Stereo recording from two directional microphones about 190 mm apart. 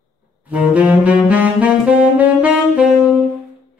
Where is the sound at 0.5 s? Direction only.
5° right (ahead or behind).